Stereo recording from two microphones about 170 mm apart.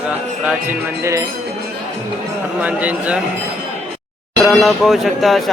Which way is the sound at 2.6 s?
10° right (ahead or behind).